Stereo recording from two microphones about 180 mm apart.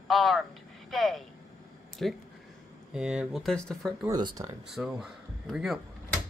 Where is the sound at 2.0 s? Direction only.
Centre (ahead or behind).